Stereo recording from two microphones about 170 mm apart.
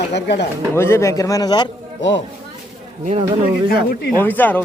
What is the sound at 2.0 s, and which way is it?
Speech, 90° left.